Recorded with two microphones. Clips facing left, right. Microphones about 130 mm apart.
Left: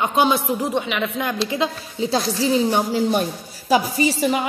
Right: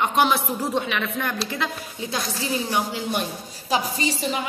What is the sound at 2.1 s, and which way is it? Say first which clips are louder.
A woman's voice: left 8 dB; 30° left (ahead or behind).